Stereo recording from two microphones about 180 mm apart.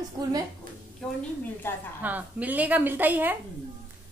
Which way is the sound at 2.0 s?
10° right (ahead or behind).